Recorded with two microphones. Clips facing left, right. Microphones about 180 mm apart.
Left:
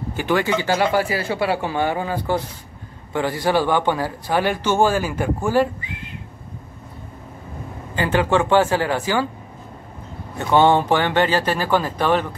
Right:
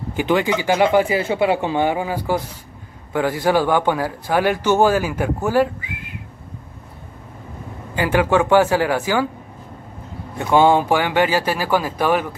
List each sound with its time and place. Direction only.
0.1 s speech: 15° right (ahead or behind)
7.9 s speech: 10° right (ahead or behind)
10.4 s speech: 10° right (ahead or behind)